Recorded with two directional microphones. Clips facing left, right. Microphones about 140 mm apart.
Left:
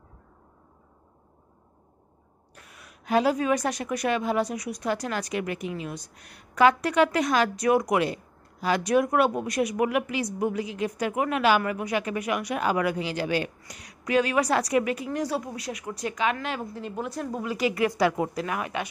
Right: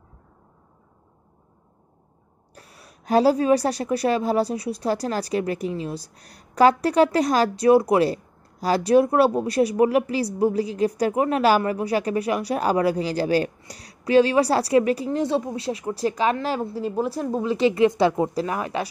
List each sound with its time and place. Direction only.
2.5 s a woman's voice: 35° right (ahead or behind)